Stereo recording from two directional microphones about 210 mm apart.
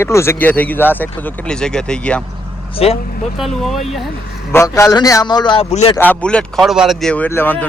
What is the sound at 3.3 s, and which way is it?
Speech, centre (ahead or behind).